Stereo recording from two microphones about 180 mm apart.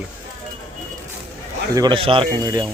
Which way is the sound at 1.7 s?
25° right (ahead or behind).